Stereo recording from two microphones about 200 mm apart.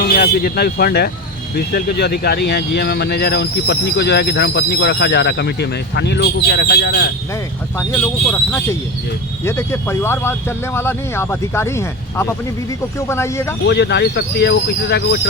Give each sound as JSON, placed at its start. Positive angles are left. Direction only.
{"t": 0.0, "sound": "speech", "side_deg": 50}
{"t": 7.8, "sound": "speech", "side_deg": 10}
{"t": 13.7, "sound": "speech", "side_deg": 60}